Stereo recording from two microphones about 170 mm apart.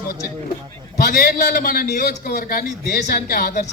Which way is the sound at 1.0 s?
60° left (ahead or behind).